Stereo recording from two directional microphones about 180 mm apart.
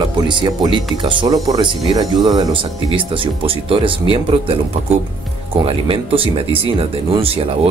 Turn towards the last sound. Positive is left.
turn(degrees=-30)  # may be behind; listen again after turning